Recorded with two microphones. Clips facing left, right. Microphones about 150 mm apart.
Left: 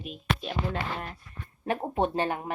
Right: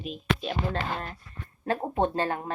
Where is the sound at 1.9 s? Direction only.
20° left (ahead or behind).